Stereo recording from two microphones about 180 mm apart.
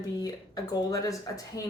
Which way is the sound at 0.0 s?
20° left (ahead or behind).